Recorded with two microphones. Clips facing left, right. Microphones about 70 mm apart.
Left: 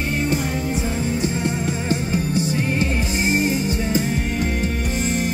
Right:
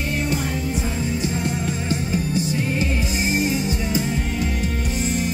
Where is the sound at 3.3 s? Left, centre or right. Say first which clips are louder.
Left 1 dB; left.